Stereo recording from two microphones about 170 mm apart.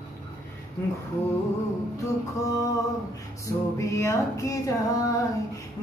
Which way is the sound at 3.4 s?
20° left (ahead or behind).